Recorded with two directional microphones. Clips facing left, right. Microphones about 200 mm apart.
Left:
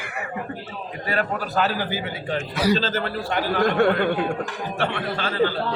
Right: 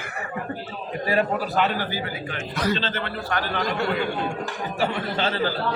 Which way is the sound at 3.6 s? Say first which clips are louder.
Left 8 dB; 60° left (ahead or behind).